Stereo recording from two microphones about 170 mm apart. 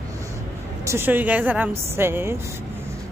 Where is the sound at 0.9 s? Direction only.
15° right (ahead or behind).